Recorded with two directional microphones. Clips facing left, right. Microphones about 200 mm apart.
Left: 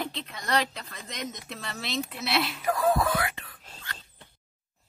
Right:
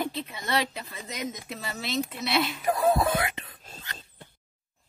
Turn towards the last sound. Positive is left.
turn(degrees=-20)  # may be behind; listen again after turning